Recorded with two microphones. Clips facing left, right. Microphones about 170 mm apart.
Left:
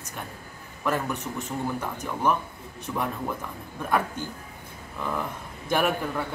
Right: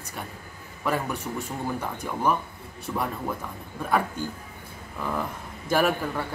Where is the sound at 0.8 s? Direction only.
10° right (ahead or behind).